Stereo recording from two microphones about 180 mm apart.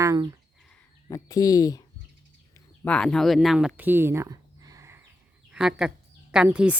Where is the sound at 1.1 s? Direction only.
20° left (ahead or behind).